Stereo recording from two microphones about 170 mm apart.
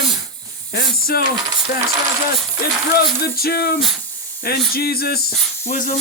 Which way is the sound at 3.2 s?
65° left (ahead or behind).